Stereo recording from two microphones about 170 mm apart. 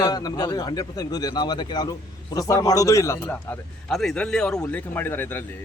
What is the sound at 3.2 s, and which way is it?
A man's voice, centre (ahead or behind).